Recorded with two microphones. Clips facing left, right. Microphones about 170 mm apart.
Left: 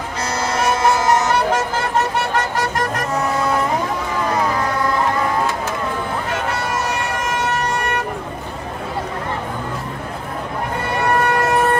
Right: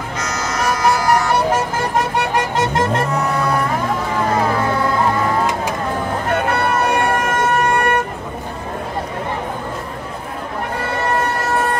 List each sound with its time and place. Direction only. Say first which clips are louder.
0.2 s vehicle: left 2 dB; 30° left (ahead or behind)
2.3 s music: right 2 dB; 20° right (ahead or behind)
6.2 s vehicle: right 5 dB; 55° right (ahead or behind)